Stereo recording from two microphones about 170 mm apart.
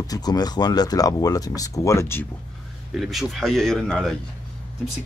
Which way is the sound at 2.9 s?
Centre (ahead or behind).